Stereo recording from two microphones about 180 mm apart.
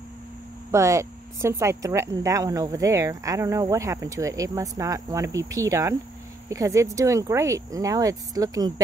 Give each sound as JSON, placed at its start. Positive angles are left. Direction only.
{"t": 0.7, "sound": "speech", "side_deg": -15}